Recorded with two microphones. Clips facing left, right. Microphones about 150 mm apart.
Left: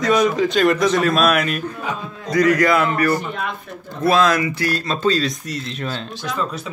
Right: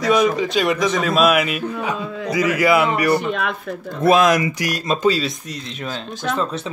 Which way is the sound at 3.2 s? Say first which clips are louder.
Right 4 dB; 75° right (ahead or behind).